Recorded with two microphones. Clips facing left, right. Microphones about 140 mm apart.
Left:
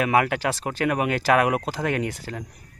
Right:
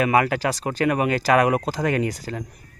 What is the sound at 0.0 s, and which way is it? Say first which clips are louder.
Speech: right 2 dB; centre (ahead or behind).